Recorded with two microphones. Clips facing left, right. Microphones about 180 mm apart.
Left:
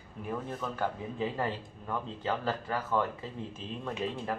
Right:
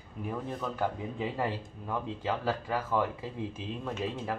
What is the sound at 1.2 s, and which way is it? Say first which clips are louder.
Speech: even; 10° right (ahead or behind).